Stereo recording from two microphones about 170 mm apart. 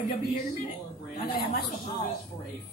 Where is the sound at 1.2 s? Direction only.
60° left (ahead or behind).